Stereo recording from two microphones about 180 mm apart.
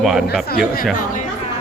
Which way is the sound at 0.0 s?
Centre (ahead or behind).